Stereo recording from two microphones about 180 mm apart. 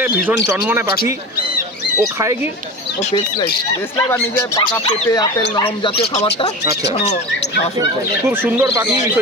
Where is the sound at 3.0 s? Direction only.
40° left (ahead or behind).